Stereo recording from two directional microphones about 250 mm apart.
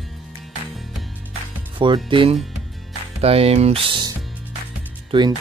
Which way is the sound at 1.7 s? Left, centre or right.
Centre.